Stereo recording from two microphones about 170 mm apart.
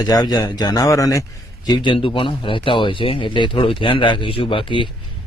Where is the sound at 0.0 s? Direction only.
25° left (ahead or behind).